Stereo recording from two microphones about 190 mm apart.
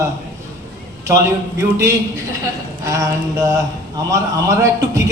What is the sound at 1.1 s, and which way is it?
Speech, 15° right (ahead or behind).